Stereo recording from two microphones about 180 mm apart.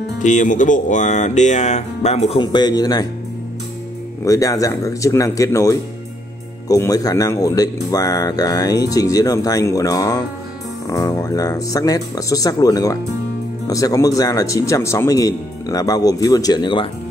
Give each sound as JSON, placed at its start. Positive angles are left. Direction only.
{"t": 0.2, "sound": "speech", "side_deg": 45}
{"t": 2.4, "sound": "speech", "side_deg": 25}
{"t": 4.2, "sound": "speech", "side_deg": 20}